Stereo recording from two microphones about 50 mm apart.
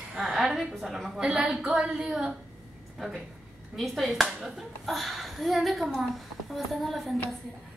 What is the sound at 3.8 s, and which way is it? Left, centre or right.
A woman's voice, centre.